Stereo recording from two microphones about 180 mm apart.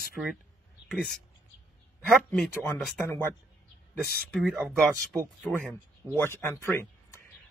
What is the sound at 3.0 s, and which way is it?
Speech, 15° left (ahead or behind).